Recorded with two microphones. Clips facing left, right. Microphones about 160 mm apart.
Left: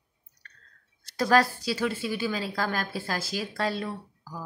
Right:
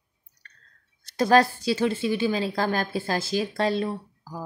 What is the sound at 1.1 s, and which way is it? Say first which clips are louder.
Speech: right 3 dB; 25° right (ahead or behind).